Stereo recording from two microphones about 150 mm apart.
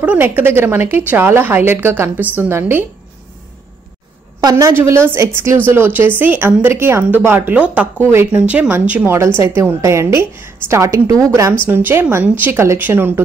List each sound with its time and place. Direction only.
0.0 s a woman's voice: 10° right (ahead or behind)
4.4 s a woman's voice: 25° right (ahead or behind)